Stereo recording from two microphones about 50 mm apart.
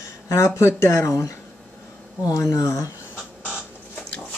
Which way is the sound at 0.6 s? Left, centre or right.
Left.